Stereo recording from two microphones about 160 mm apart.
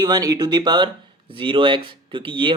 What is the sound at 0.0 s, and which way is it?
Speech, 25° right (ahead or behind).